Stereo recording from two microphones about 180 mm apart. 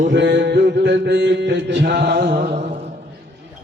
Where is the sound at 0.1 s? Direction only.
85° right; by 2.6 s 60° right (ahead or behind).